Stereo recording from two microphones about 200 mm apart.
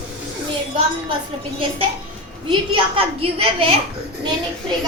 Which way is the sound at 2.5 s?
30° right (ahead or behind).